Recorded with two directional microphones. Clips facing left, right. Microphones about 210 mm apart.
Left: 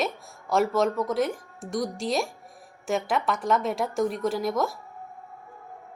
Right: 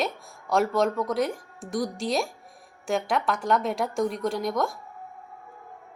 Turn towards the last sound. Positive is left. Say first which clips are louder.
# left 1 dB
turn(degrees=0)  # may be behind; listen again after turning